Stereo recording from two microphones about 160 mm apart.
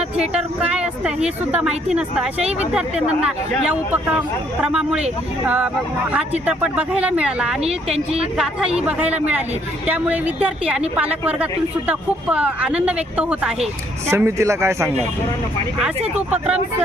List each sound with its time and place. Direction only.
0.3 s a woman's voice: 5° right (ahead or behind)
16.1 s a woman's voice: 5° right (ahead or behind)